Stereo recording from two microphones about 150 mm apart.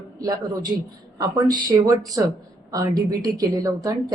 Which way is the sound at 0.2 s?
25° right (ahead or behind).